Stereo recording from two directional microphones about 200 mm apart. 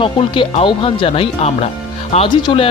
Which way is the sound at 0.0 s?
25° left (ahead or behind).